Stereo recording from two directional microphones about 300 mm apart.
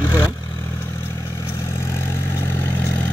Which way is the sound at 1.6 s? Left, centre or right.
Centre.